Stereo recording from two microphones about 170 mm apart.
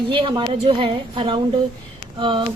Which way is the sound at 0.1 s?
30° right (ahead or behind).